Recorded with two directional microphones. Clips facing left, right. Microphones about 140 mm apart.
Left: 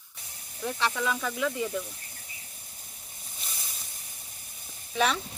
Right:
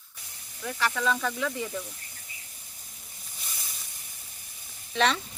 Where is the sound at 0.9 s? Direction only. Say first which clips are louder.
Right 3 dB; 10° left (ahead or behind).